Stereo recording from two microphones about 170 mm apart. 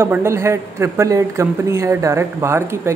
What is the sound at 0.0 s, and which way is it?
Speech, 15° right (ahead or behind).